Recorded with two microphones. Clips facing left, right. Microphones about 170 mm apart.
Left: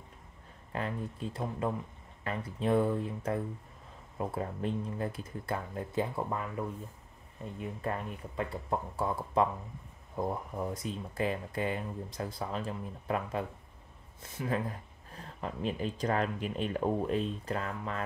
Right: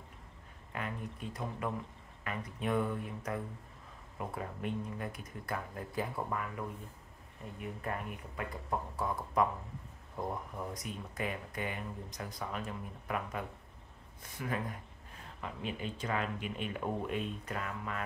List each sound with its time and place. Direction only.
0.7 s speech: 30° left (ahead or behind)
7.8 s speech: 30° left (ahead or behind)
10.7 s speech: 30° left (ahead or behind)